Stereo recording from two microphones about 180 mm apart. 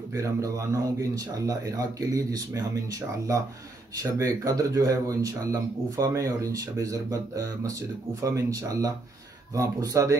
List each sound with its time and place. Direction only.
0.2 s speech: 20° right (ahead or behind)